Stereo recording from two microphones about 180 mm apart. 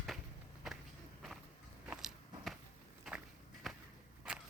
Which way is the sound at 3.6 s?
Centre (ahead or behind).